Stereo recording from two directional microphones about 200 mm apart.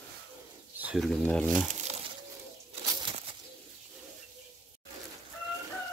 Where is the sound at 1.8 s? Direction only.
30° right (ahead or behind).